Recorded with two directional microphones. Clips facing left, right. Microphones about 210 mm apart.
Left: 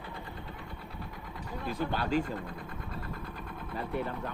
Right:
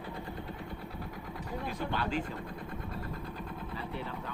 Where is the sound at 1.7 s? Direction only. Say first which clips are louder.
Left 5 dB; 40° left (ahead or behind).